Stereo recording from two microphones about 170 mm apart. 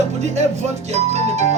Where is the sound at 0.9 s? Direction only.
40° right (ahead or behind).